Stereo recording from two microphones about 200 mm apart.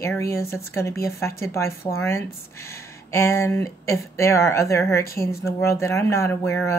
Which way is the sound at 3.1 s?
15° left (ahead or behind).